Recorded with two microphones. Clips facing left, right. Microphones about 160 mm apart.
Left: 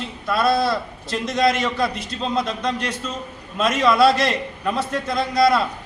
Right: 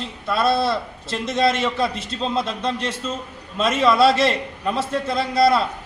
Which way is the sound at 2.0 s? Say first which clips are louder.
Even; 25° right (ahead or behind).